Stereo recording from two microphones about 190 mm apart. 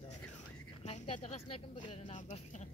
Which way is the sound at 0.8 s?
30° left (ahead or behind).